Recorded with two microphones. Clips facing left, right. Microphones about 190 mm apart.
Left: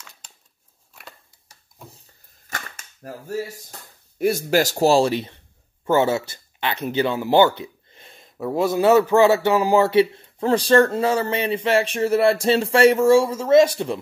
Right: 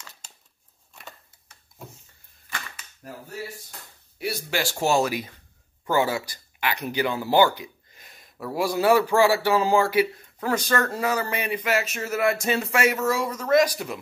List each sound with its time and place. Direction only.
2.5 s cap gun: 45° left (ahead or behind)
4.2 s speech: 45° left (ahead or behind); by 13.9 s 25° left (ahead or behind)